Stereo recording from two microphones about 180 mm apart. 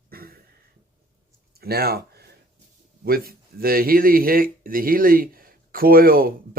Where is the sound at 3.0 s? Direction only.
55° right (ahead or behind).